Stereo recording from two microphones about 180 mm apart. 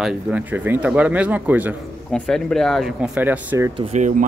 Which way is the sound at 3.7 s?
40° right (ahead or behind).